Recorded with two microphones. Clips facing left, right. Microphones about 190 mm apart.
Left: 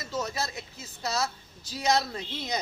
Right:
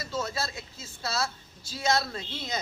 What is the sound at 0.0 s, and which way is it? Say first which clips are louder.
Speech: even; 15° left (ahead or behind).